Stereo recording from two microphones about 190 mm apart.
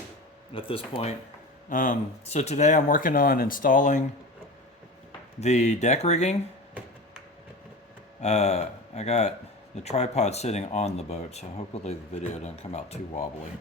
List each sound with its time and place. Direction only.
0.5 s speech: 30° left (ahead or behind)
1.7 s speech: 45° left (ahead or behind)
5.4 s speech: 35° left (ahead or behind)
8.2 s speech: 35° left (ahead or behind)